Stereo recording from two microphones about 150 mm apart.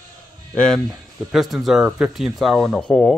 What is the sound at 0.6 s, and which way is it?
Speech, 5° left (ahead or behind).